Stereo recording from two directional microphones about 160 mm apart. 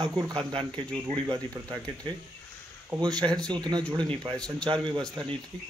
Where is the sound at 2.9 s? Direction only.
25° right (ahead or behind).